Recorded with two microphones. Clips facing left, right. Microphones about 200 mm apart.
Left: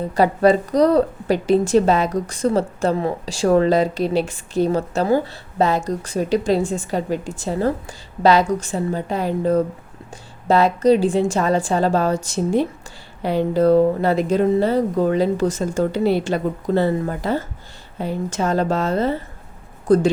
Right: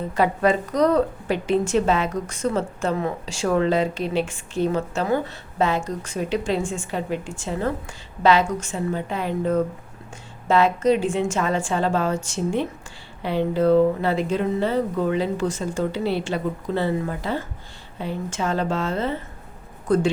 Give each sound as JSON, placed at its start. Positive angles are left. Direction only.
{"t": 0.0, "sound": "a woman's voice", "side_deg": 35}